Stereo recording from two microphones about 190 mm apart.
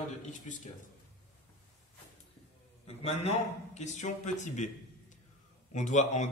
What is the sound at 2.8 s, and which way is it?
A man's voice, 35° left (ahead or behind).